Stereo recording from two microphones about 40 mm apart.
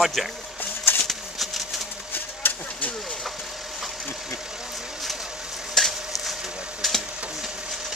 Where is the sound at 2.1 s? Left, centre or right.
Left.